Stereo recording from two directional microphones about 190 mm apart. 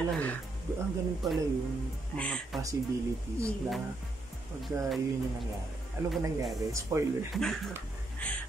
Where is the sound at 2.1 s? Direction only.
5° left (ahead or behind).